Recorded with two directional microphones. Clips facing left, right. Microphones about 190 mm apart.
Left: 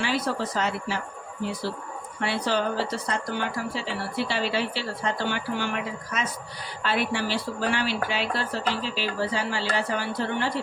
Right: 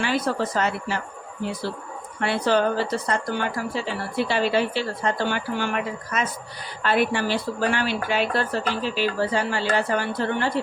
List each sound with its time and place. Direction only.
0.0 s speech: 50° right (ahead or behind)
2.2 s speech: 55° right (ahead or behind)